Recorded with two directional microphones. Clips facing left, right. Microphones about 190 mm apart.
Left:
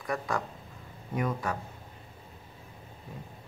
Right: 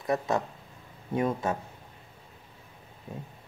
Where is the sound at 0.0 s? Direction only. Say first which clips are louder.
Right 5 dB; 25° right (ahead or behind).